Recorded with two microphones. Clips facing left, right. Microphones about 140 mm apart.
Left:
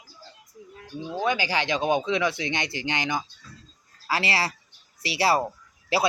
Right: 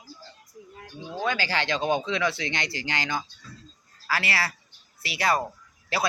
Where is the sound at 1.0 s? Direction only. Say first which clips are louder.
Left 2 dB; 15° left (ahead or behind).